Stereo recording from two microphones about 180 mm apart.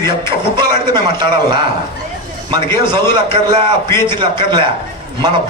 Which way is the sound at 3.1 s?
25° right (ahead or behind).